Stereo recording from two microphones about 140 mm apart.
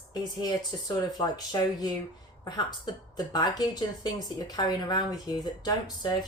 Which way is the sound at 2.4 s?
30° left (ahead or behind).